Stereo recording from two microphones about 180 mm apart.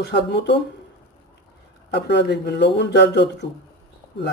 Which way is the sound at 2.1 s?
70° left (ahead or behind).